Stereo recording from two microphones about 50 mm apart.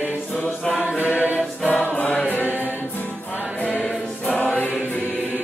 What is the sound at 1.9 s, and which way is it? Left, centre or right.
Music, left.